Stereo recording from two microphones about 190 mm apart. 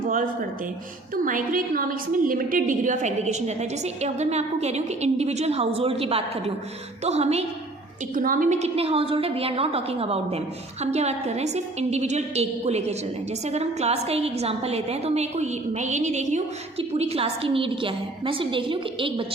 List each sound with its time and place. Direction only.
0.0 s a woman's voice: 45° right (ahead or behind)
8.1 s a woman's voice: 45° right (ahead or behind); by 19.2 s 25° right (ahead or behind)